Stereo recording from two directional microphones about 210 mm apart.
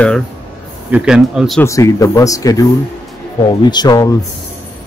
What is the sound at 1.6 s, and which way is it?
Speech, 15° left (ahead or behind).